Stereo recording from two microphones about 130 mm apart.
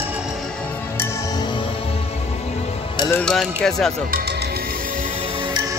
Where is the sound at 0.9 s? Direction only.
20° left (ahead or behind).